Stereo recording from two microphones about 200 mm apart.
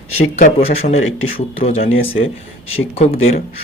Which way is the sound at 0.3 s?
35° left (ahead or behind).